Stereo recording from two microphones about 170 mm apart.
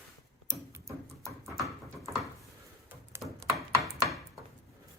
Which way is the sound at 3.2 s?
5° right (ahead or behind).